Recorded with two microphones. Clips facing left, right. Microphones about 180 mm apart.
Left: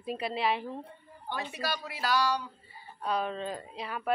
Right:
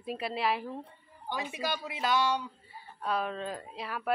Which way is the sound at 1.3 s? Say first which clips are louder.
Right 1 dB; 10° right (ahead or behind).